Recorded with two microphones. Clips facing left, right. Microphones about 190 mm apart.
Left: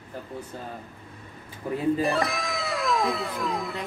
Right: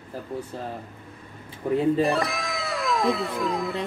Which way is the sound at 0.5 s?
30° right (ahead or behind).